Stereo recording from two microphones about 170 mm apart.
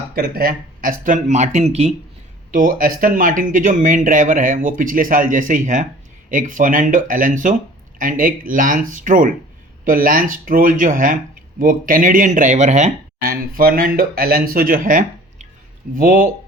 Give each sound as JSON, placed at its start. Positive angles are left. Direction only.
{"t": 0.1, "sound": "speech", "side_deg": -60}
{"t": 2.5, "sound": "speech", "side_deg": -55}
{"t": 13.2, "sound": "speech", "side_deg": -60}